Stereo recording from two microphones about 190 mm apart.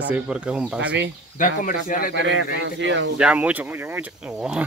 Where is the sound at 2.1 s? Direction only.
70° right (ahead or behind).